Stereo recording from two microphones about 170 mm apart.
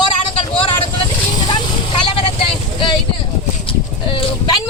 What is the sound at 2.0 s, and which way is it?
Vehicle, 30° left (ahead or behind).